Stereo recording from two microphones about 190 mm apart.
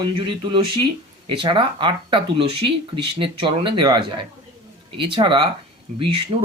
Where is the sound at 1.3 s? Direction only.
25° right (ahead or behind).